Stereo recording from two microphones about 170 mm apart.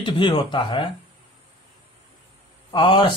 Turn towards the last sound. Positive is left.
turn(degrees=30)  # may be behind; listen again after turning